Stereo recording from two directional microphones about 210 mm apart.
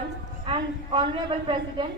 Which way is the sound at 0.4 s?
25° right (ahead or behind).